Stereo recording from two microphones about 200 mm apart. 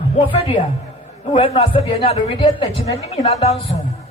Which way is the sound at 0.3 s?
25° left (ahead or behind).